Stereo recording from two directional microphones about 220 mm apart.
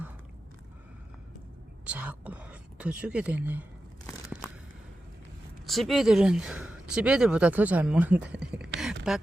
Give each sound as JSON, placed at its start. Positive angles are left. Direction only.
{"t": 1.8, "sound": "speech", "side_deg": -5}
{"t": 5.6, "sound": "speech", "side_deg": 0}